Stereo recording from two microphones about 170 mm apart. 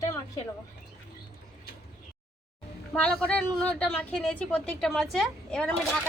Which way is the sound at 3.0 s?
5° left (ahead or behind).